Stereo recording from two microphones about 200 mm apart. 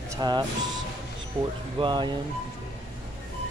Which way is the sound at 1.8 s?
25° right (ahead or behind).